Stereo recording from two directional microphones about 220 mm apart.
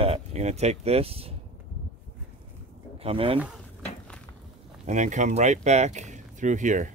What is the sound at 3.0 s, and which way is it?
Speech, 25° right (ahead or behind).